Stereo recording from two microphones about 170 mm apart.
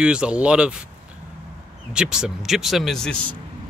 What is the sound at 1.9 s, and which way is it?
Speech, 5° right (ahead or behind).